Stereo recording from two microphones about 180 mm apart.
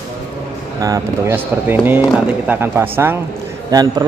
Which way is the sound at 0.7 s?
20° right (ahead or behind).